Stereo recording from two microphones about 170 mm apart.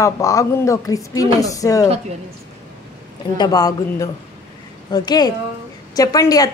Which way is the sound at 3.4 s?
20° left (ahead or behind).